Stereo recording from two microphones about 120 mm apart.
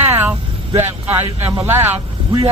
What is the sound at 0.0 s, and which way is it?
Vehicle, 20° right (ahead or behind).